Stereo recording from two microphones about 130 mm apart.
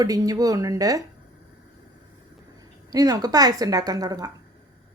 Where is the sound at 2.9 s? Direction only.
30° right (ahead or behind).